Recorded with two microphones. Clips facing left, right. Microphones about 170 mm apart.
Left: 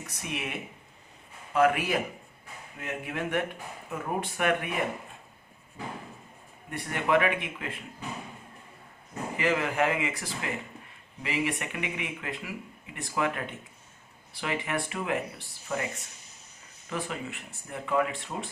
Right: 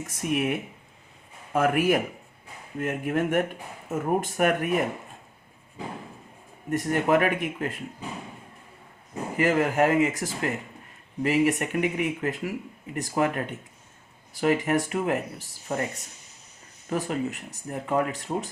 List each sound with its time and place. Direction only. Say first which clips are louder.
0.0 s speech: right 9 dB; 45° right (ahead or behind)
1.5 s speech: right 2 dB; 45° right (ahead or behind)
6.7 s speech: right 5 dB; 45° right (ahead or behind)
9.4 s speech: right 5 dB; 45° right (ahead or behind)
16.9 s speech: right 7 dB; 40° right (ahead or behind)